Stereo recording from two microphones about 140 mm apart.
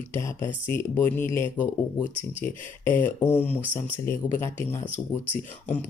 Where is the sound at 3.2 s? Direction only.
15° left (ahead or behind).